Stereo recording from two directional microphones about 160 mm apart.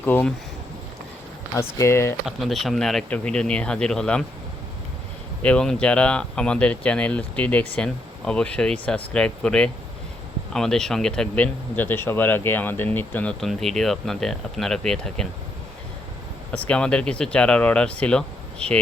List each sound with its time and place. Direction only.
0.0 s speech: 10° left (ahead or behind)
1.8 s speech: 15° left (ahead or behind)
2.2 s speech: centre (ahead or behind)
5.4 s speech: 5° left (ahead or behind)
16.5 s speech: 5° left (ahead or behind)